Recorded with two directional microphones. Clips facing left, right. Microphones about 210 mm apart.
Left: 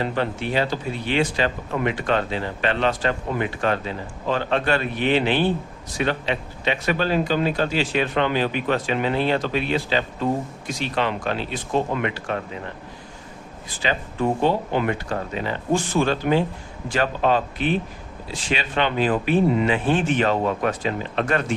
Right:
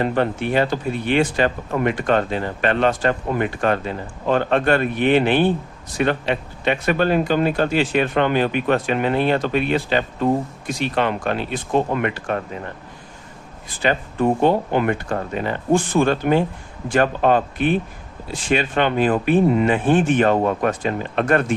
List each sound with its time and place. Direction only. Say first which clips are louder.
0.0 s speech: right 4 dB; 55° right (ahead or behind)
13.7 s speech: right 5 dB; 55° right (ahead or behind)